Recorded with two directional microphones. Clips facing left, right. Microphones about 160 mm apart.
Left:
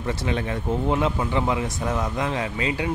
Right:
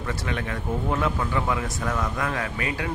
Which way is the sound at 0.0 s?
25° left (ahead or behind).